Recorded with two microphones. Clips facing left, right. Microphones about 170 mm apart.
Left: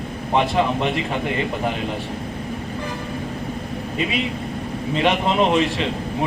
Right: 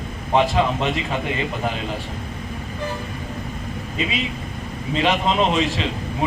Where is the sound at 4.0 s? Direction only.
60° left (ahead or behind).